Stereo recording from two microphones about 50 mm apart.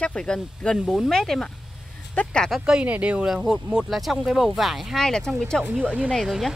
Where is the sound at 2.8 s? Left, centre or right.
Right.